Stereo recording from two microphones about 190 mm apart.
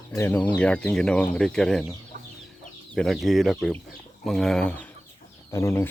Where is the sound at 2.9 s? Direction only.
Centre (ahead or behind).